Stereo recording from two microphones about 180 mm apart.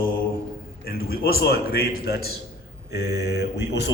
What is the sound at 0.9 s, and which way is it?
Speech, 55° left (ahead or behind).